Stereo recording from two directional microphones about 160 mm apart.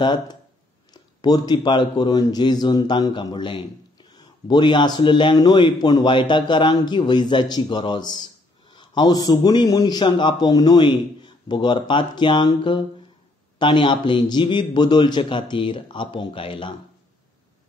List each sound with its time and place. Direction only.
0.0 s a man's voice: 25° left (ahead or behind)